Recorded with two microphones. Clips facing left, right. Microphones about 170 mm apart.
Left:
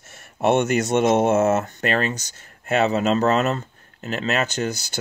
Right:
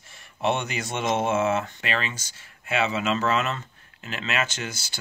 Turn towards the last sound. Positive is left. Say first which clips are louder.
# left 9 dB
turn(degrees=40)  # may be behind; listen again after turning